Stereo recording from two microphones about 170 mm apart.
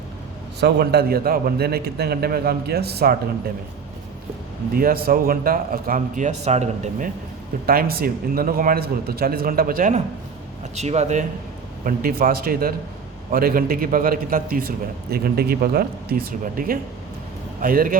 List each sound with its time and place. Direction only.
0.6 s a man's voice: 75° right (ahead or behind)
4.7 s speech: 60° right (ahead or behind); by 7.1 s 45° right (ahead or behind)
7.7 s speech: 60° right (ahead or behind)
10.8 s speech: 40° right (ahead or behind)
11.9 s speech: 55° right (ahead or behind)